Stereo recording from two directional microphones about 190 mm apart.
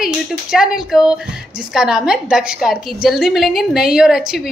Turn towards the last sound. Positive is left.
turn(degrees=-5)  # may be behind; listen again after turning